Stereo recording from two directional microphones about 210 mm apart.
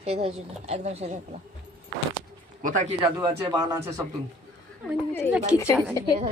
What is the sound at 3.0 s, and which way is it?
Speech, 20° right (ahead or behind).